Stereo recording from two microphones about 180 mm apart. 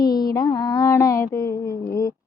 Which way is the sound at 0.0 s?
20° left (ahead or behind).